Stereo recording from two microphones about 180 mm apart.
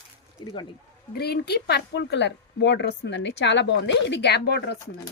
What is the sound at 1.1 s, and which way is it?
A woman's voice, 60° left (ahead or behind).